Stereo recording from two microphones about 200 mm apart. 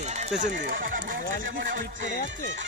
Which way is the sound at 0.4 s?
40° right (ahead or behind).